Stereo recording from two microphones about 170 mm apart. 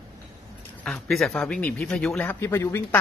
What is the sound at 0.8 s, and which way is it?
Speech, 5° left (ahead or behind).